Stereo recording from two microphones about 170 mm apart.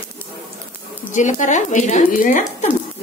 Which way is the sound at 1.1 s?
45° left (ahead or behind).